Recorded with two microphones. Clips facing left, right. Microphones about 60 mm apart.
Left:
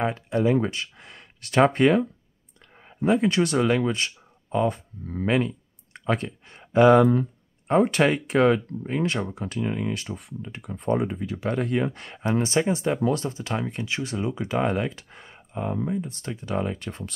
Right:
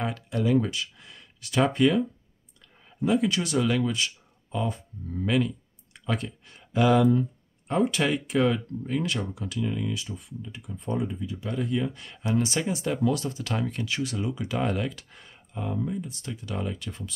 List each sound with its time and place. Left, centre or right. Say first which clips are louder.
0.0 s speech: left 5 dB; left
2.8 s speech: left 3 dB; left